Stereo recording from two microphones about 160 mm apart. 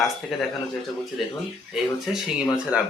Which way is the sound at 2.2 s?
5° right (ahead or behind).